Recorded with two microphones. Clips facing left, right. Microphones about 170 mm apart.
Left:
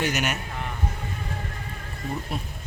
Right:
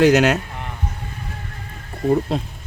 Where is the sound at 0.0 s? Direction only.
90° right.